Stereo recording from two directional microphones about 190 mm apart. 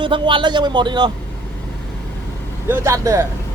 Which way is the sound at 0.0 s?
25° right (ahead or behind).